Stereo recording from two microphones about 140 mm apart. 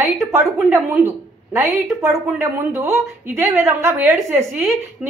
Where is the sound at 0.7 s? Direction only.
15° right (ahead or behind).